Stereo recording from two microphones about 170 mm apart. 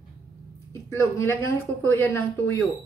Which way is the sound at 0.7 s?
15° left (ahead or behind).